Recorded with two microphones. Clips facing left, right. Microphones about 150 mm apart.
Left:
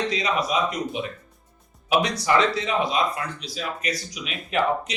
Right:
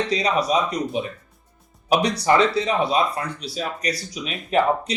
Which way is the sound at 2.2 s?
35° right (ahead or behind).